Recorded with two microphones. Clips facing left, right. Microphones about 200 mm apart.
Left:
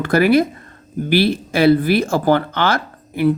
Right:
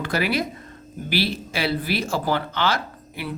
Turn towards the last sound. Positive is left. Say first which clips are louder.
# left 14 dB
turn(degrees=50)  # may be behind; listen again after turning